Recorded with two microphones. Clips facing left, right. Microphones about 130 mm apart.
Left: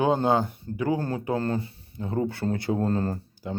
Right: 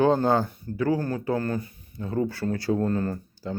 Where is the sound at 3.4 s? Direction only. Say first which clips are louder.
Even; 20° left (ahead or behind).